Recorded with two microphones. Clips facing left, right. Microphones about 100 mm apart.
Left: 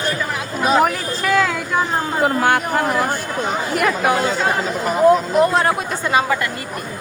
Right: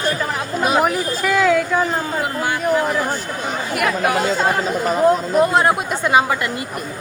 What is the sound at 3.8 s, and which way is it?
Speech, 30° left (ahead or behind).